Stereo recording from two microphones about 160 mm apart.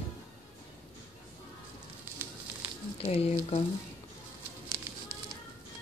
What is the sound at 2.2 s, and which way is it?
Fire, 10° right (ahead or behind).